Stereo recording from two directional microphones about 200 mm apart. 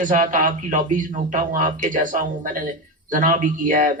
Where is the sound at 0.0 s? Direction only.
40° right (ahead or behind).